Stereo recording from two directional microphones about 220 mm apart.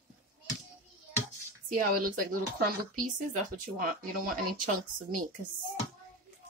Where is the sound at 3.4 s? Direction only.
40° right (ahead or behind).